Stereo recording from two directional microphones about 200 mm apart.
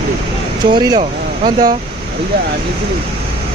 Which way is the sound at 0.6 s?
20° right (ahead or behind).